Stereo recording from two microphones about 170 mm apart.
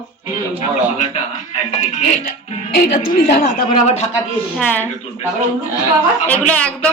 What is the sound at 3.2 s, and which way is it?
Speech, 50° left (ahead or behind).